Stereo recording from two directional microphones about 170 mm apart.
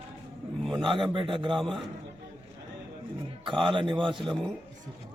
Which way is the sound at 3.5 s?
30° right (ahead or behind).